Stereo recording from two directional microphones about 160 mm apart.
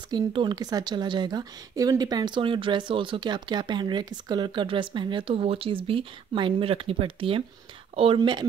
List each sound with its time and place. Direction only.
0.1 s a woman's voice: 30° right (ahead or behind)